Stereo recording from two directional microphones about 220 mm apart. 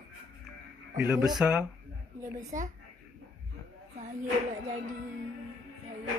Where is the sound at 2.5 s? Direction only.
35° right (ahead or behind).